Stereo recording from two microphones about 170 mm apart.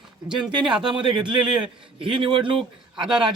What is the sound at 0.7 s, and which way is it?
A man's voice, 30° right (ahead or behind).